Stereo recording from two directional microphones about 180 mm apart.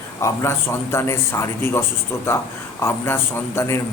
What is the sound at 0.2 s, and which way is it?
A man's voice, 15° left (ahead or behind).